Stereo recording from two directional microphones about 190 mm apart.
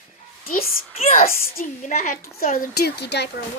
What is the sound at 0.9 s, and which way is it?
Speech, 35° left (ahead or behind).